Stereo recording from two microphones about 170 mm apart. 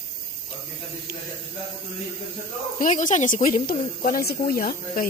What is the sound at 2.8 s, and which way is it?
Speech, 50° left (ahead or behind).